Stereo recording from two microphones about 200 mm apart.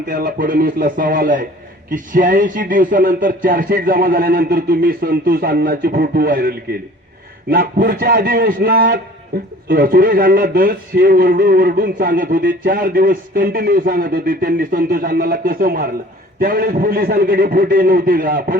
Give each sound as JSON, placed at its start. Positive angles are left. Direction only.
{"t": 0.1, "sound": "a man's voice", "side_deg": -45}